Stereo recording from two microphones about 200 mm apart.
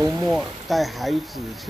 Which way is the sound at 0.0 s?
15° right (ahead or behind).